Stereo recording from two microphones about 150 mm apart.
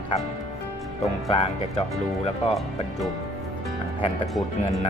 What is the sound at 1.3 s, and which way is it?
Speech, 40° left (ahead or behind).